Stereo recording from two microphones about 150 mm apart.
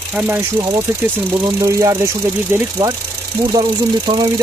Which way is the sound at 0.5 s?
30° right (ahead or behind).